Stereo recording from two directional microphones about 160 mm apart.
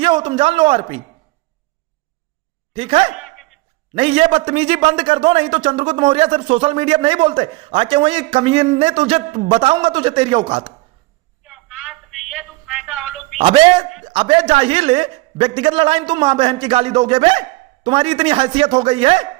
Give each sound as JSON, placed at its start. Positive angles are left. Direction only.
{"t": 0.0, "sound": "a man's voice", "side_deg": -30}
{"t": 2.7, "sound": "a man's voice", "side_deg": -35}
{"t": 3.2, "sound": "a sound", "side_deg": 0}
{"t": 3.9, "sound": "a man's voice", "side_deg": -40}
{"t": 11.4, "sound": "a sound", "side_deg": 0}
{"t": 13.4, "sound": "a man's voice", "side_deg": -35}